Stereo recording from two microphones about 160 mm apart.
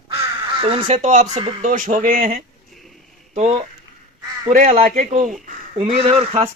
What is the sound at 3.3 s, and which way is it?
Speech, 45° right (ahead or behind).